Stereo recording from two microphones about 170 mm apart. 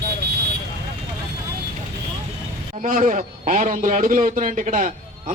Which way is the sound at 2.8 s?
50° right (ahead or behind).